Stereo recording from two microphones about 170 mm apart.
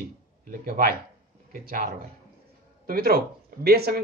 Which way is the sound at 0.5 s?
60° right (ahead or behind).